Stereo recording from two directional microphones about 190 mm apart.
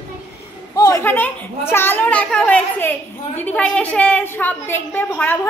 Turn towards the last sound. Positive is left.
turn(degrees=10)  # may be behind; listen again after turning